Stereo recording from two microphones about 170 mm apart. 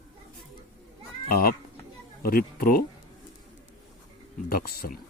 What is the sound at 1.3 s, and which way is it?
Speech, 60° left (ahead or behind).